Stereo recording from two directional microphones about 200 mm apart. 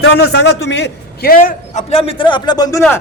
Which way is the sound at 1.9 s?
25° left (ahead or behind).